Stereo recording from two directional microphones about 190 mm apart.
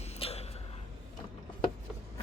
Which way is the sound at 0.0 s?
35° left (ahead or behind).